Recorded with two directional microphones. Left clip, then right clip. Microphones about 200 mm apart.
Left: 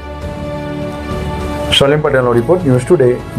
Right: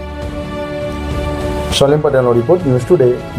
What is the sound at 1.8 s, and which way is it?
Speech, 20° left (ahead or behind).